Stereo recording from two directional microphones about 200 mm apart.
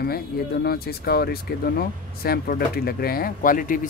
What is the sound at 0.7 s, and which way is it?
Speech, 50° left (ahead or behind).